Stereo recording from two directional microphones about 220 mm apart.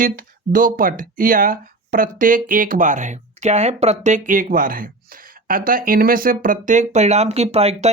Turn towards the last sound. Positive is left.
turn(degrees=-30)  # may be behind; listen again after turning